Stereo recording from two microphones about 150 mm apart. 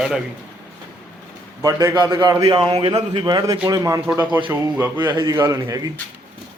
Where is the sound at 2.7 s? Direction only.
40° right (ahead or behind); by 5.0 s 15° right (ahead or behind).